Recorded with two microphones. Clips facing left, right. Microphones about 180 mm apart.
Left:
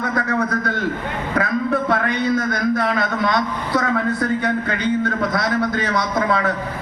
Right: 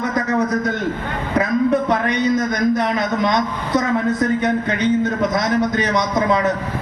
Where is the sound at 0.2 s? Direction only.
20° right (ahead or behind).